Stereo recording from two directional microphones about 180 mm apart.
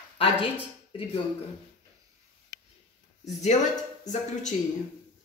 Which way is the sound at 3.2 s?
40° left (ahead or behind).